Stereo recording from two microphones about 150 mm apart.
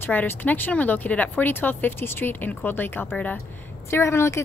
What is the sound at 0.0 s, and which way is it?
A woman's voice, 10° left (ahead or behind).